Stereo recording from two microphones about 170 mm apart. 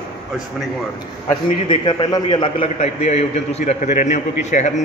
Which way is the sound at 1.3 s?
30° left (ahead or behind).